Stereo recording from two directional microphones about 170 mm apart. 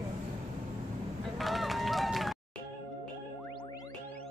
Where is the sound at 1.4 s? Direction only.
Centre (ahead or behind).